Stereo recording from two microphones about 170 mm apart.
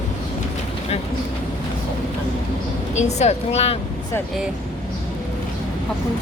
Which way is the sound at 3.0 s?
40° left (ahead or behind).